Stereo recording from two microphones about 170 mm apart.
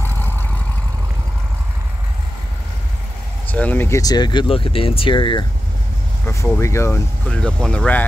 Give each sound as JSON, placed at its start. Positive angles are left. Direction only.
{"t": 0.0, "sound": "vehicle", "side_deg": 10}
{"t": 3.4, "sound": "speech", "side_deg": 10}
{"t": 6.2, "sound": "speech", "side_deg": 15}
{"t": 7.2, "sound": "speech", "side_deg": 5}